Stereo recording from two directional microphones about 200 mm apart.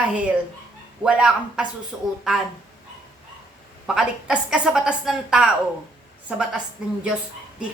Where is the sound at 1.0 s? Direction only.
5° right (ahead or behind).